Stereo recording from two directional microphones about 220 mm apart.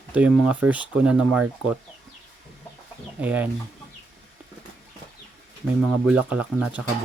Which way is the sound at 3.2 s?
5° right (ahead or behind).